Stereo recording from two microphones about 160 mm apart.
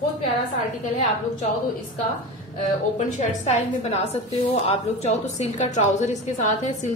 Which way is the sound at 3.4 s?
40° left (ahead or behind).